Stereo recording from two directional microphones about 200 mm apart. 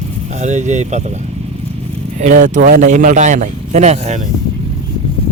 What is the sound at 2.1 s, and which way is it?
Speech, 35° right (ahead or behind).